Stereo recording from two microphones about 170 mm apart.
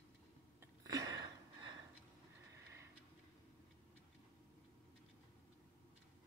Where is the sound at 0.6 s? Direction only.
20° right (ahead or behind).